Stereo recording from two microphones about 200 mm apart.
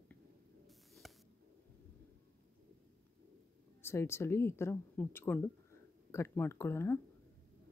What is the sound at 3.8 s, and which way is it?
Speech, 10° left (ahead or behind).